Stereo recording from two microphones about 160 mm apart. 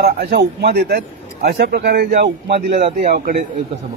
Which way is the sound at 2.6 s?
45° right (ahead or behind).